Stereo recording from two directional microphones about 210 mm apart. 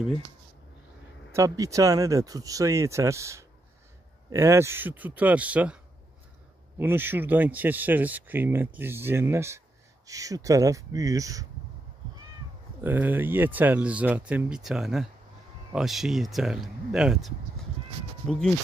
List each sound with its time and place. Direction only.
1.3 s speech: 15° right (ahead or behind)
6.8 s speech: 10° right (ahead or behind)
12.8 s speech: 10° right (ahead or behind)